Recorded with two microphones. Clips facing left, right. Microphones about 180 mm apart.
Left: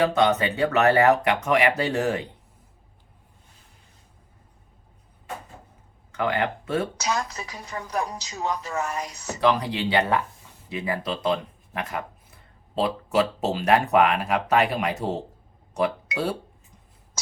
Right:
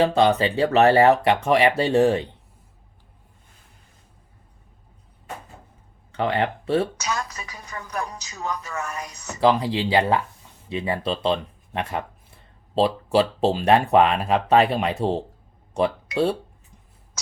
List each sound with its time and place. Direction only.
0.0 s speech: 30° right (ahead or behind)
6.1 s speech: 30° right (ahead or behind)
7.0 s a woman's voice: 30° left (ahead or behind)
9.4 s speech: 25° right (ahead or behind)